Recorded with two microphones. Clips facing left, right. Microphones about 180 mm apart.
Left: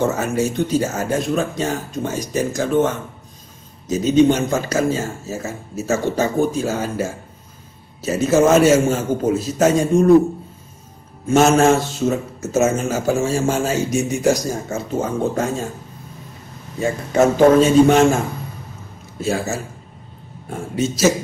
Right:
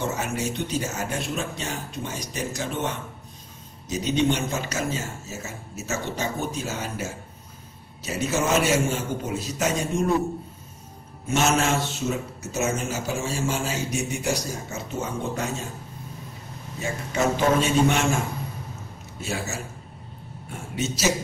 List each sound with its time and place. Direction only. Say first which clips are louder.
0.0 s a man's voice: left 8 dB; 45° left (ahead or behind)
4.0 s a man's voice: left 9 dB; 45° left (ahead or behind)
11.2 s a man's voice: left 9 dB; 50° left (ahead or behind)
17.1 s a man's voice: left 9 dB; 45° left (ahead or behind)
19.2 s a man's voice: left 9 dB; 45° left (ahead or behind)